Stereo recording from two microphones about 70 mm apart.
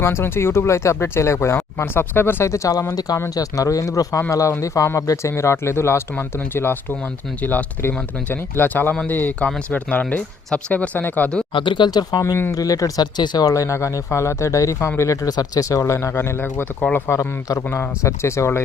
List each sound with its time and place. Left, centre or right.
0.0 s speech: left
11.8 s speech: left
12.5 s speech: left
13.5 s speech: left
17.1 s speech: left
17.7 s speech: left